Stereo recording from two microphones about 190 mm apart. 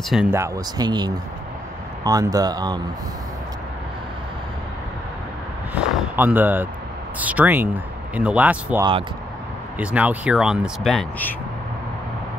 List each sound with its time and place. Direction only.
0.3 s speech: 15° right (ahead or behind)
5.8 s speech: 10° right (ahead or behind)